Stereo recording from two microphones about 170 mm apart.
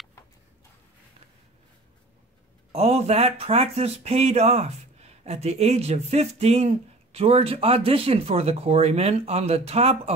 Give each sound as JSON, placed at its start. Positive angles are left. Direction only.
{"t": 2.7, "sound": "speech", "side_deg": -40}